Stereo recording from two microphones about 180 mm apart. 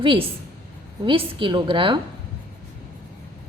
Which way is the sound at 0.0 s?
30° right (ahead or behind).